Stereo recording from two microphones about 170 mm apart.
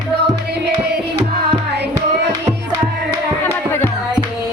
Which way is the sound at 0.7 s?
75° right (ahead or behind).